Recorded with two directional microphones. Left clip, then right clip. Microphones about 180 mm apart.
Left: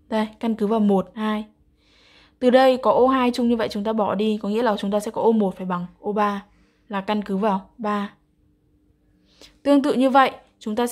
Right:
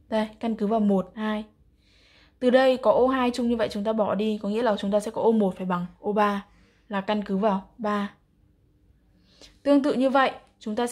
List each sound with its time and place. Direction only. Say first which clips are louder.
0.1 s a woman's voice: left 3 dB; 20° left (ahead or behind)
9.4 s a woman's voice: left 3 dB; 20° left (ahead or behind)